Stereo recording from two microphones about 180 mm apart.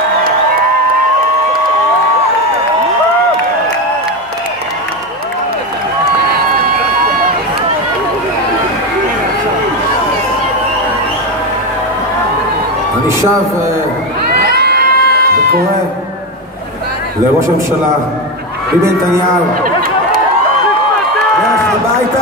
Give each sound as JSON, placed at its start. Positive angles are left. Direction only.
{"t": 14.4, "sound": "crowd", "side_deg": -60}